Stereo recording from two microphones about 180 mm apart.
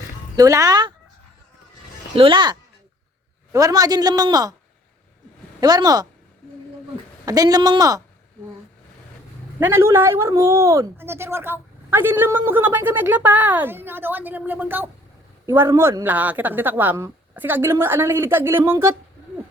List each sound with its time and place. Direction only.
0.3 s a man's voice: 20° right (ahead or behind)
2.1 s a man's voice: 30° right (ahead or behind)
5.5 s a man's voice: 20° right (ahead or behind)
9.6 s speech: 10° right (ahead or behind)